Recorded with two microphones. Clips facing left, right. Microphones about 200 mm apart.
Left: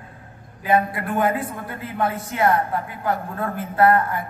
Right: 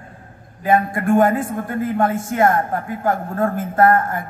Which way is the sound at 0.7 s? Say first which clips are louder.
Right 4 dB; 45° right (ahead or behind).